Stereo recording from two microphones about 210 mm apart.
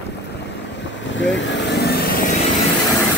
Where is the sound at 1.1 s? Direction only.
60° left (ahead or behind).